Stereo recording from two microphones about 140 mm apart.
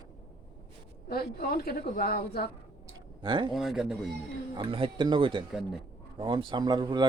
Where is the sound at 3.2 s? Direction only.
35° right (ahead or behind).